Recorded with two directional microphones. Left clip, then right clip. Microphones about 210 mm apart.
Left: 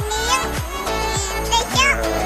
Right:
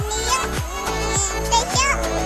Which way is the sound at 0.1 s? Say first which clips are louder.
Left 2 dB; 35° right (ahead or behind).